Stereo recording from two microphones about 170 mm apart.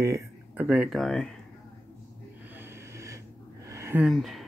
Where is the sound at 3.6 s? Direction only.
15° right (ahead or behind).